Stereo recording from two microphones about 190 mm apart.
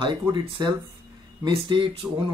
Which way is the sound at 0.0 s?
25° right (ahead or behind).